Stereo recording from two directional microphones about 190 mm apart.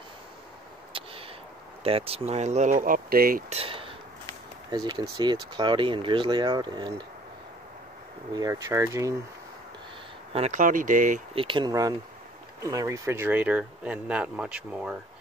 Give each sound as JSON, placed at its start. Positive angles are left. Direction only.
{"t": 0.9, "sound": "a sound", "side_deg": -30}
{"t": 1.9, "sound": "speech", "side_deg": -30}
{"t": 3.4, "sound": "speech", "side_deg": -30}
{"t": 8.4, "sound": "speech", "side_deg": -15}
{"t": 10.3, "sound": "speech", "side_deg": -35}
{"t": 11.3, "sound": "speech", "side_deg": -25}